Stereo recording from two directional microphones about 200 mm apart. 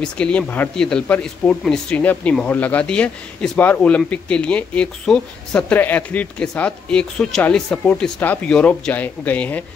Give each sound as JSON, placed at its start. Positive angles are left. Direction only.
{"t": 0.0, "sound": "speech", "side_deg": 5}